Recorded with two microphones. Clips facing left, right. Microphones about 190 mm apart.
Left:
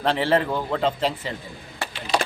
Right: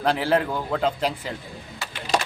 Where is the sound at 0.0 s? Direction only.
Centre (ahead or behind).